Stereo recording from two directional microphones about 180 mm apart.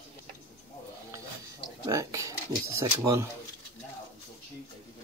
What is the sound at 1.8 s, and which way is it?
Speech, 15° right (ahead or behind).